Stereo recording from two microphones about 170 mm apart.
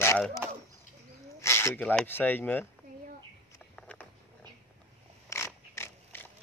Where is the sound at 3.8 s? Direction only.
5° left (ahead or behind).